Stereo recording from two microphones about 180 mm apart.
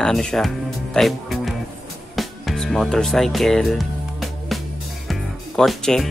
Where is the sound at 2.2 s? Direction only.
Centre (ahead or behind).